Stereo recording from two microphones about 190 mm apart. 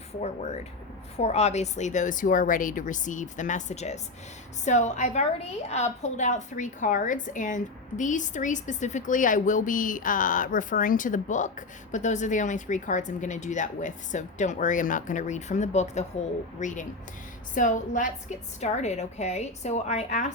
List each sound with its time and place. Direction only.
0.2 s a woman's voice: 35° left (ahead or behind)